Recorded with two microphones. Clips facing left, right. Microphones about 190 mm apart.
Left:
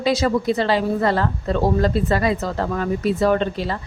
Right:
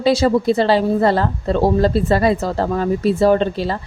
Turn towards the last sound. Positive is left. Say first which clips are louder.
# right 4 dB
turn(degrees=-30)  # may be behind; listen again after turning